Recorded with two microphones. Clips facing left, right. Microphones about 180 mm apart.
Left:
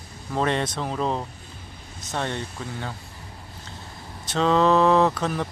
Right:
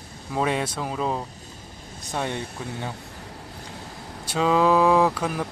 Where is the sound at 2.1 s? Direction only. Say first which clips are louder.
Even; 10° right (ahead or behind).